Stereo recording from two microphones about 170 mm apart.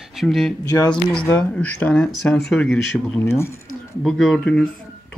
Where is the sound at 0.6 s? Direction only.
20° left (ahead or behind).